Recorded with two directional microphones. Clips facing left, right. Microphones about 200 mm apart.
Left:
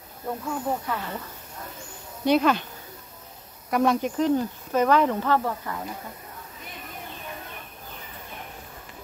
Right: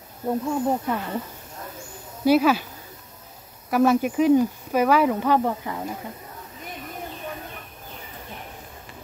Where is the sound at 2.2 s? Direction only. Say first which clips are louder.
Right 3 dB; 5° right (ahead or behind).